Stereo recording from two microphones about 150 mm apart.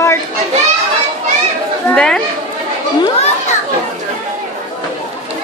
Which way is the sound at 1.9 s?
5° left (ahead or behind).